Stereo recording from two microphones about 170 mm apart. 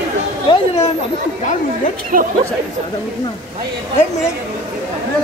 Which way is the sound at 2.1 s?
55° right (ahead or behind).